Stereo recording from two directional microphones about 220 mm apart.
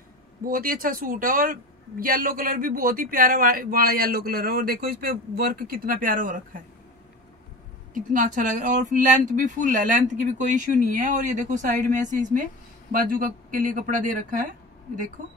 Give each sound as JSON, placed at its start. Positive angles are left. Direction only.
{"t": 0.4, "sound": "speech", "side_deg": -40}
{"t": 7.9, "sound": "speech", "side_deg": -35}